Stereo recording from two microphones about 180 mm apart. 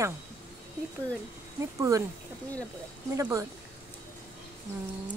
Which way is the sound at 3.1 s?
20° right (ahead or behind).